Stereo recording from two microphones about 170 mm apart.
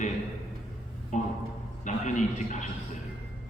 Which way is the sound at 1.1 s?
50° left (ahead or behind).